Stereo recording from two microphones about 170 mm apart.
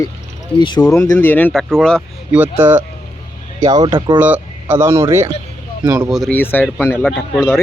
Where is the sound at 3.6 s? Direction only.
25° right (ahead or behind).